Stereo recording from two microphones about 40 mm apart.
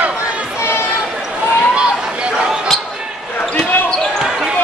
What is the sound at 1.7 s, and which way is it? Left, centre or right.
Basketball bounce, right.